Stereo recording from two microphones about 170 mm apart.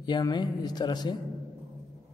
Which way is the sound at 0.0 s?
25° left (ahead or behind).